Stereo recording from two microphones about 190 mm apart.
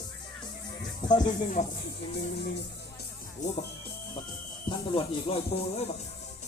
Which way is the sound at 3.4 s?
40° left (ahead or behind).